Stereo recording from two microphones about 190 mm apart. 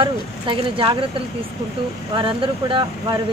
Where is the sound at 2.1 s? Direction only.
25° right (ahead or behind).